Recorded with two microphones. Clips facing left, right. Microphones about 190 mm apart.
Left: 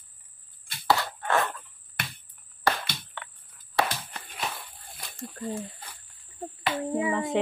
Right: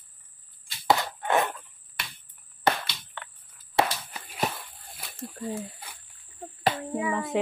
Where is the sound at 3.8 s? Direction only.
25° right (ahead or behind).